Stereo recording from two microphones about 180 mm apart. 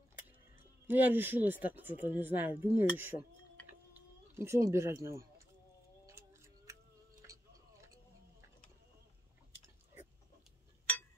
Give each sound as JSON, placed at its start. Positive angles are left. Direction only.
{"t": 0.8, "sound": "speech", "side_deg": -10}
{"t": 6.0, "sound": "tick-tock", "side_deg": -15}